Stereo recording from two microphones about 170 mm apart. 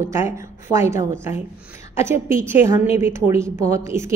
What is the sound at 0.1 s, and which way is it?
A woman's voice, 15° right (ahead or behind).